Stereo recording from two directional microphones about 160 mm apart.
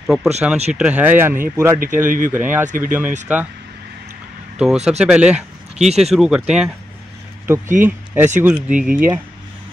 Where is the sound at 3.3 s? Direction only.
10° right (ahead or behind).